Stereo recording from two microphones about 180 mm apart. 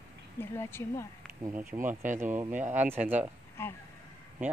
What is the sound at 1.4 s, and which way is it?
Speech, 10° right (ahead or behind).